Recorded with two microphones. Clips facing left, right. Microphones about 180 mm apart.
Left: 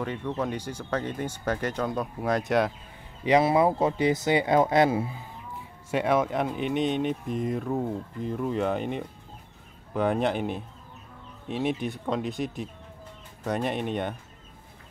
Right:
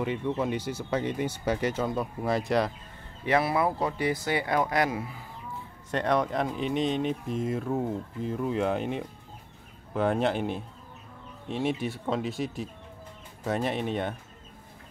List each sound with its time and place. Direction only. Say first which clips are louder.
0.0 s speech: right 1 dB; 10° right (ahead or behind)
3.3 s speech: left 4 dB; 20° left (ahead or behind)
5.9 s speech: left 2 dB; 5° left (ahead or behind)